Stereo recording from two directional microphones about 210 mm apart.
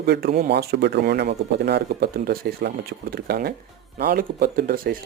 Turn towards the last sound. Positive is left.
turn(degrees=-45)  # may be behind; listen again after turning